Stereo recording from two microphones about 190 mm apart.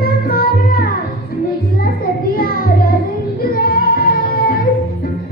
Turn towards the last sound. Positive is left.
turn(degrees=50)  # may be behind; listen again after turning